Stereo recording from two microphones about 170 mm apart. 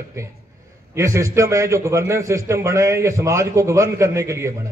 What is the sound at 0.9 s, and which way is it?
A man's voice, 15° right (ahead or behind).